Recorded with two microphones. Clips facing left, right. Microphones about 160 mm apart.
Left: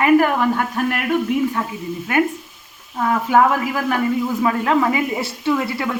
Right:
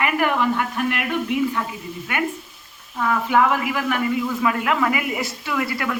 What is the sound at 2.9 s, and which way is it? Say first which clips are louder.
Speech: left 3 dB; 40° left (ahead or behind).